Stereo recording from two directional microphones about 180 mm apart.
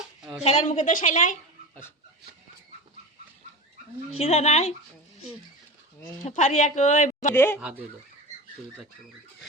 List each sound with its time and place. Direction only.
0.2 s a sound: centre (ahead or behind)
0.4 s a woman's voice: 40° left (ahead or behind)
4.1 s a woman's voice: 35° left (ahead or behind)
6.2 s a woman's voice: 40° left (ahead or behind)
7.3 s speech: 10° left (ahead or behind)
7.6 s speech: 10° right (ahead or behind)